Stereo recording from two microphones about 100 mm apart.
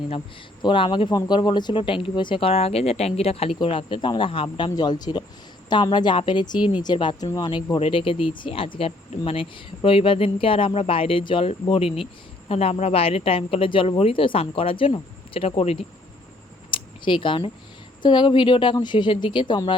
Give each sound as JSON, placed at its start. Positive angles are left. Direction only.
{"t": 0.6, "sound": "speech", "side_deg": 55}
{"t": 3.6, "sound": "speech", "side_deg": 60}
{"t": 4.7, "sound": "a woman's voice", "side_deg": 45}
{"t": 7.2, "sound": "speech", "side_deg": 40}
{"t": 7.8, "sound": "speech", "side_deg": 60}
{"t": 11.7, "sound": "speech", "side_deg": 70}
{"t": 12.5, "sound": "speech", "side_deg": 90}
{"t": 16.7, "sound": "a sound", "side_deg": 55}
{"t": 18.0, "sound": "speech", "side_deg": 50}